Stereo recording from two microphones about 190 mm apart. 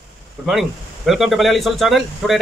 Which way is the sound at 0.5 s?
Centre (ahead or behind).